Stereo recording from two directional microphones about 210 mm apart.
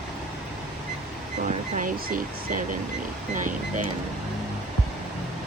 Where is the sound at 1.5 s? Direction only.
35° right (ahead or behind).